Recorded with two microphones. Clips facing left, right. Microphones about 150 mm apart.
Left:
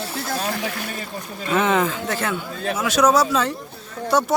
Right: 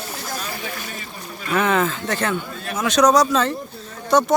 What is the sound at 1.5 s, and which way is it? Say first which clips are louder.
Speech: even; 20° left (ahead or behind).